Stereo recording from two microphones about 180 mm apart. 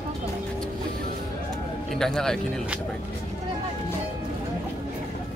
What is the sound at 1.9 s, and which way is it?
Speech, 5° left (ahead or behind).